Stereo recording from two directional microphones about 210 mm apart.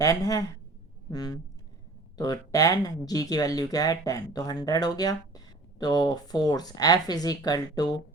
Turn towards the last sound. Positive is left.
turn(degrees=20)  # may be behind; listen again after turning